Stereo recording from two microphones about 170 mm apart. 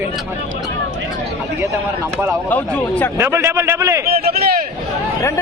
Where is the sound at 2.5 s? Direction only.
10° left (ahead or behind).